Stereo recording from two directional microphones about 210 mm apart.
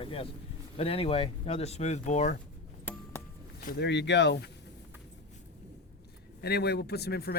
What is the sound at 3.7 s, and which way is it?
Speech, 55° left (ahead or behind).